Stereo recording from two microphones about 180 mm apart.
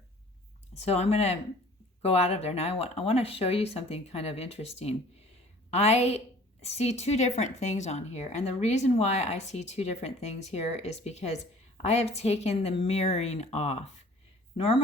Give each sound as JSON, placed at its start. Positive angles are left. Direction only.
{"t": 0.8, "sound": "a woman's voice", "side_deg": 35}